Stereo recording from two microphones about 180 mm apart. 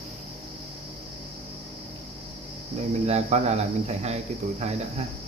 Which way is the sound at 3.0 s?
35° right (ahead or behind).